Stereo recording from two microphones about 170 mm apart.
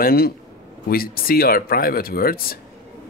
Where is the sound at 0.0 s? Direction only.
60° left (ahead or behind).